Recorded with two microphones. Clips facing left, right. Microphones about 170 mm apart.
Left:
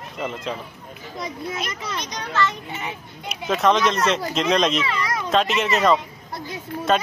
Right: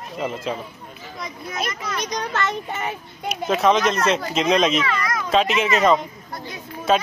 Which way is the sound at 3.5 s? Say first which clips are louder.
Right 1 dB; centre (ahead or behind).